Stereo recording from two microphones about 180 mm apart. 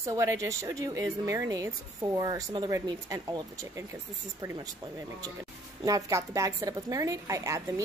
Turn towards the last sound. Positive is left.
turn(degrees=-15)  # may be behind; listen again after turning